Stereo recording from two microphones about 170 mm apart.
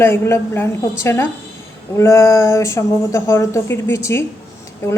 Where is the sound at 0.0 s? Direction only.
15° left (ahead or behind).